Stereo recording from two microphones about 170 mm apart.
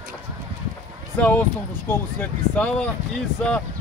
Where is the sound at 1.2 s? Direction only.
10° left (ahead or behind).